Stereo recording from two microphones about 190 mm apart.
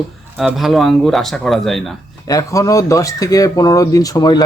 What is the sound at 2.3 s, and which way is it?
Speech, 15° left (ahead or behind).